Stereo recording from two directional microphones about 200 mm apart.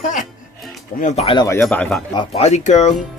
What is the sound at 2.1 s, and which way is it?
Speech, 30° left (ahead or behind).